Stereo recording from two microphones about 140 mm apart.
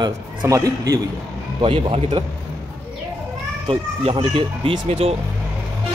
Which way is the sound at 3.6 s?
40° right (ahead or behind).